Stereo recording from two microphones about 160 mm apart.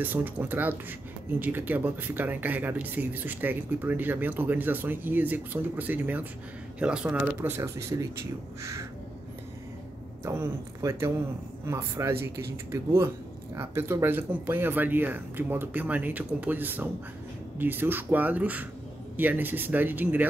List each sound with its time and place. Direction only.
0.0 s speech: 10° right (ahead or behind)
10.2 s speech: 20° right (ahead or behind)